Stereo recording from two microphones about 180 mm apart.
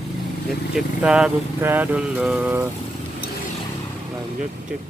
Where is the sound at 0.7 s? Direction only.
5° right (ahead or behind).